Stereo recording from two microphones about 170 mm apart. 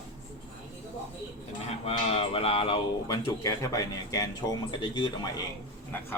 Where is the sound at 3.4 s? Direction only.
20° left (ahead or behind).